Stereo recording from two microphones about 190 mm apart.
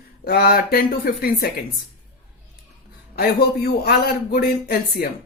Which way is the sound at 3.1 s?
55° left (ahead or behind).